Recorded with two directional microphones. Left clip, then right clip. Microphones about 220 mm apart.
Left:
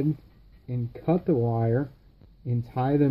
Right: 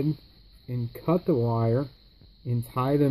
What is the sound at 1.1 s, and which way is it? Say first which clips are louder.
Speech: even; 20° right (ahead or behind).